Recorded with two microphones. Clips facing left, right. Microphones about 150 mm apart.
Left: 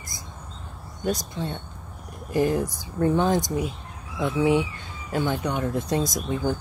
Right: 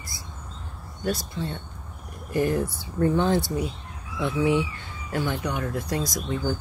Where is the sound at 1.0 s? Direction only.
20° left (ahead or behind).